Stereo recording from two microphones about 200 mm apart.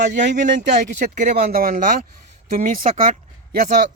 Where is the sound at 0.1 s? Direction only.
60° right (ahead or behind).